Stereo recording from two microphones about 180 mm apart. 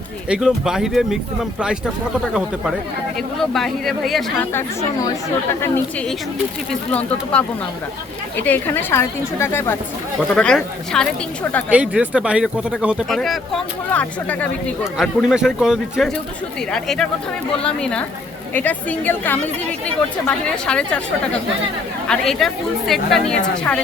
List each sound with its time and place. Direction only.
0.3 s speech: 5° right (ahead or behind)
3.2 s speech: centre (ahead or behind)
4.5 s a woman's voice: 15° left (ahead or behind)
8.4 s a woman's voice: 10° left (ahead or behind)
11.7 s speech: 5° right (ahead or behind)
14.9 s a woman's voice: centre (ahead or behind)
22.0 s speech: 5° left (ahead or behind)